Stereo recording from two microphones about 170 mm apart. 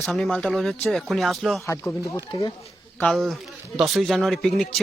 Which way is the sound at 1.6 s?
15° left (ahead or behind).